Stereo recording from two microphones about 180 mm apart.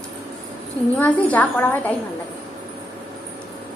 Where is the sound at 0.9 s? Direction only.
10° left (ahead or behind).